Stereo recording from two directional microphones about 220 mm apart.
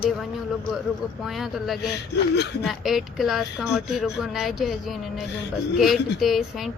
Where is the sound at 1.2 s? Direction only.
Centre (ahead or behind).